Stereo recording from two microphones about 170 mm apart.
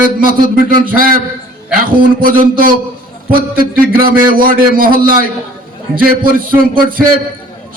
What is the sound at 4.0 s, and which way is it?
A man's voice, 55° right (ahead or behind).